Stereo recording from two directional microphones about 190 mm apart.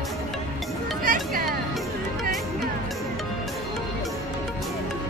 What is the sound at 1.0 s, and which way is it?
Music, 50° right (ahead or behind).